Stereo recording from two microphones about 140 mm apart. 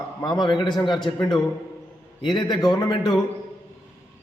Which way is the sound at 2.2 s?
30° left (ahead or behind).